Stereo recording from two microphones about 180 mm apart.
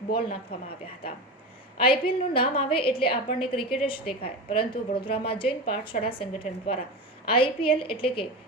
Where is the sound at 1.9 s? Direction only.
30° left (ahead or behind).